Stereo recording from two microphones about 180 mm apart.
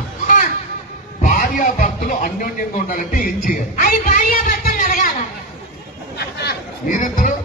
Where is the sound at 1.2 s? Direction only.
45° left (ahead or behind).